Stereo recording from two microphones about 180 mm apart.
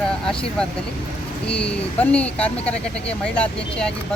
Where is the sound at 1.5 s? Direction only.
5° left (ahead or behind).